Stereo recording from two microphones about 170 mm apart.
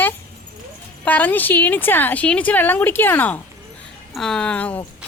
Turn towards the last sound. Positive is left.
turn(degrees=10)  # may be behind; listen again after turning